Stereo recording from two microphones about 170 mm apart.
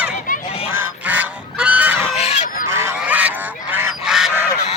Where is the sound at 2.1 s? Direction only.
35° left (ahead or behind).